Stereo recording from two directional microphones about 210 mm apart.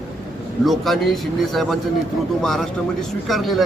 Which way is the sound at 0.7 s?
Centre (ahead or behind).